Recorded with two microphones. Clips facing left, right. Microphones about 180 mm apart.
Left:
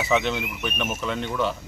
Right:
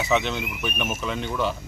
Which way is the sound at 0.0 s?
Centre (ahead or behind).